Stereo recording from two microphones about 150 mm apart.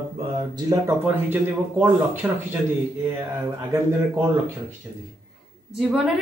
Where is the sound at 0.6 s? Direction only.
20° right (ahead or behind).